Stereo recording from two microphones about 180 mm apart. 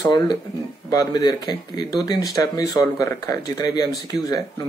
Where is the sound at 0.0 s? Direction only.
25° left (ahead or behind).